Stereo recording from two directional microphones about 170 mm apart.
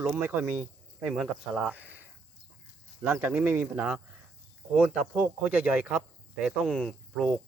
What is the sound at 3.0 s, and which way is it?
Speech, 10° right (ahead or behind).